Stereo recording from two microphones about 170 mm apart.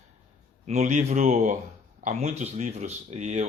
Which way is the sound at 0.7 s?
40° right (ahead or behind).